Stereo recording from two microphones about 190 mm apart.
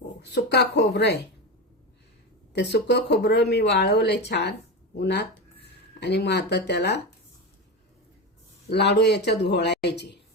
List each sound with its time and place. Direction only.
0.2 s speech: 65° left (ahead or behind)
2.5 s speech: 65° left (ahead or behind)
8.7 s speech: 65° left (ahead or behind)